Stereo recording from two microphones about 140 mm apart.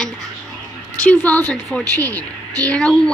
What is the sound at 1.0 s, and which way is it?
A woman's voice, 10° left (ahead or behind).